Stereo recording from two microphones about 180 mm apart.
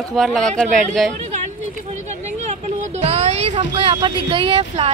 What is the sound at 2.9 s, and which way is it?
Speech, 35° right (ahead or behind).